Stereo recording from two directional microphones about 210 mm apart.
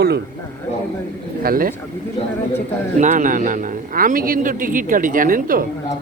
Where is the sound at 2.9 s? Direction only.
35° right (ahead or behind).